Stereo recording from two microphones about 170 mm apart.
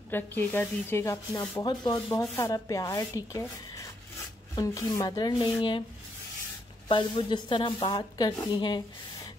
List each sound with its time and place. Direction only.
0.1 s speech: 10° left (ahead or behind); by 5.9 s 30° left (ahead or behind)
6.9 s speech: 30° left (ahead or behind)